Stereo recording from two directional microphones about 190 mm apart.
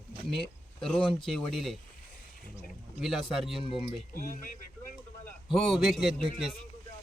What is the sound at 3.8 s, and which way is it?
Speech, 45° left (ahead or behind).